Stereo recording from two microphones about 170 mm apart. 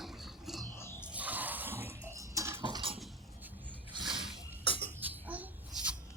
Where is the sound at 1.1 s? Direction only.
10° right (ahead or behind).